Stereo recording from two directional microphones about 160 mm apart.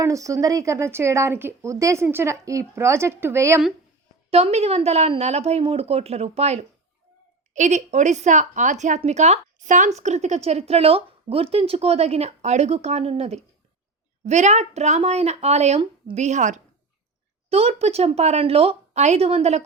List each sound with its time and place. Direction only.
0.0 s speech: 20° right (ahead or behind)
4.3 s a woman's voice: 40° right (ahead or behind)
16.2 s a woman's voice: 50° right (ahead or behind)